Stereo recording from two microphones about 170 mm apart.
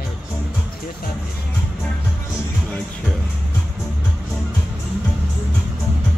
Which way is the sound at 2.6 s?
Centre (ahead or behind).